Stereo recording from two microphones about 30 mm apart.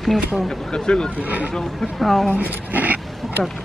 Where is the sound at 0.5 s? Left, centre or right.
Left.